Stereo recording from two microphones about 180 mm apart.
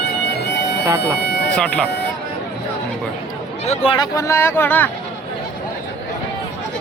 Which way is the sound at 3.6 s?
35° left (ahead or behind).